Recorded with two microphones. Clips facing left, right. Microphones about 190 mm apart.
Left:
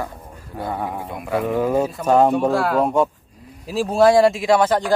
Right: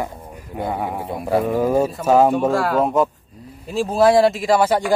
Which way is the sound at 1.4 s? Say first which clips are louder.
Left 1 dB; 10° right (ahead or behind).